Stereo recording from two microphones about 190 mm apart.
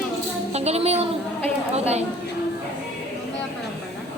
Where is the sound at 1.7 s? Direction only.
35° right (ahead or behind).